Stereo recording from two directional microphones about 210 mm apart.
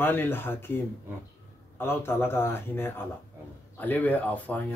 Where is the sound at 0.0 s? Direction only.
10° left (ahead or behind).